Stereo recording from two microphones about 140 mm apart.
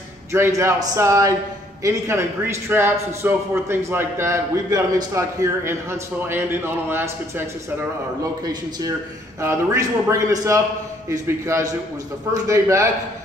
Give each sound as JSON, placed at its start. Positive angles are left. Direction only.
{"t": 0.3, "sound": "a man's voice", "side_deg": -20}
{"t": 8.2, "sound": "a man's voice", "side_deg": -25}